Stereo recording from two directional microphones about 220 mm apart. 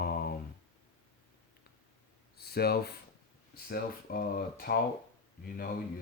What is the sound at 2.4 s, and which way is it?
Speech, 45° left (ahead or behind).